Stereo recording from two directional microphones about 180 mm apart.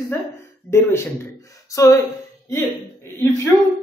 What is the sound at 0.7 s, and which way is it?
Speech, 15° left (ahead or behind).